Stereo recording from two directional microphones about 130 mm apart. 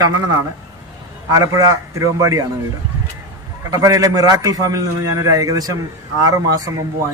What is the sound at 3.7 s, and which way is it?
A man's voice, 25° right (ahead or behind).